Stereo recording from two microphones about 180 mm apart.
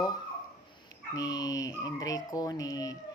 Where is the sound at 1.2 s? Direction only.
20° left (ahead or behind).